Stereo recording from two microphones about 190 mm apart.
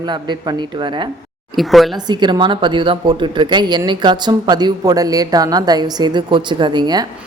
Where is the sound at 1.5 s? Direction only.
Centre (ahead or behind).